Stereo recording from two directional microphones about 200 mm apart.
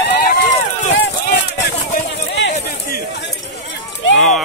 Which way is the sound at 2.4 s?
55° left (ahead or behind).